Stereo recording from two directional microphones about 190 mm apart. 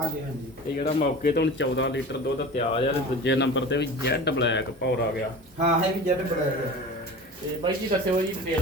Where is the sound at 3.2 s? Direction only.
70° left (ahead or behind).